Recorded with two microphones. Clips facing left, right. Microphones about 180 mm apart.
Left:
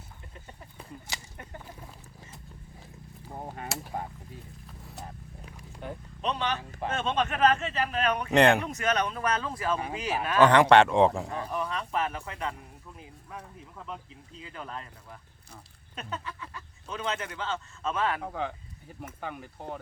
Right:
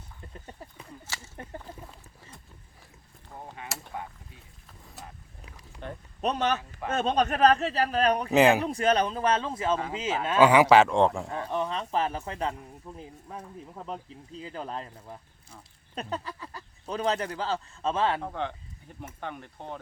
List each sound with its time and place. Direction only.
1.4 s speech: 30° right (ahead or behind)
3.7 s speech: centre (ahead or behind)
5.8 s speech: 5° left (ahead or behind)
6.2 s speech: 45° right (ahead or behind)
8.3 s speech: 5° right (ahead or behind)
8.6 s speech: 30° right (ahead or behind)
10.4 s speech: 5° right (ahead or behind)
11.5 s speech: 30° right (ahead or behind)
18.2 s speech: 5° left (ahead or behind)